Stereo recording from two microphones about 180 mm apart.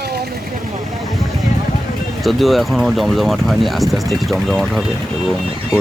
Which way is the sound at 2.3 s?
Centre (ahead or behind).